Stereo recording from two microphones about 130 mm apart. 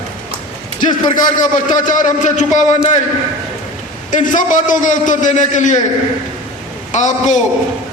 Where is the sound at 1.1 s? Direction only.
85° left; by 3.0 s 70° left (ahead or behind).